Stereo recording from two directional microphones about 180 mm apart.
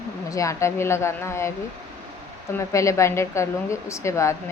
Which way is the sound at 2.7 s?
15° left (ahead or behind).